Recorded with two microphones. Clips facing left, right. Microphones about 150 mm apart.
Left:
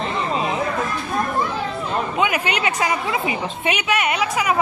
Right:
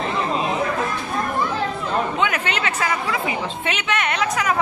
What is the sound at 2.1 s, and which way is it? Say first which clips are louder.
A woman's voice: left 2 dB; 10° left (ahead or behind).